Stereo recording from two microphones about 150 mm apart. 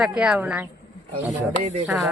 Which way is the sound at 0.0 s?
5° right (ahead or behind).